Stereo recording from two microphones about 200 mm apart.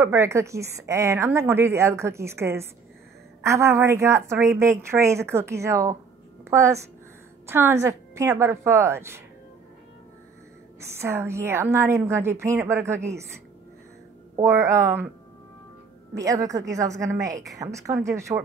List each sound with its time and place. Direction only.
0.0 s a woman's voice: 15° right (ahead or behind)
11.0 s a woman's voice: 10° right (ahead or behind)
14.4 s a woman's voice: 15° right (ahead or behind)
16.2 s a woman's voice: 15° right (ahead or behind)